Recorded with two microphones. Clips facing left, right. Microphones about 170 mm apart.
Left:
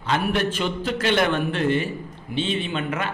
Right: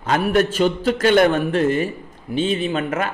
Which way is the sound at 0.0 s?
45° right (ahead or behind).